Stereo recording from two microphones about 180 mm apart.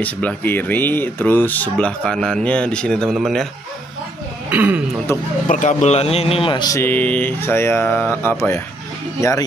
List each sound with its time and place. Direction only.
0.0 s speech: 10° left (ahead or behind)
4.5 s speech: 10° right (ahead or behind)
5.5 s speech: 45° left (ahead or behind); by 9.5 s 15° left (ahead or behind)